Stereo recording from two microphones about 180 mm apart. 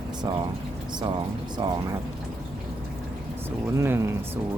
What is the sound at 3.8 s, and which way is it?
Speech, 15° right (ahead or behind).